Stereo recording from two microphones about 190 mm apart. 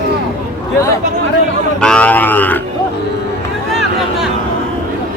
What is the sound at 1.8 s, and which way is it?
Livestock, 5° left (ahead or behind).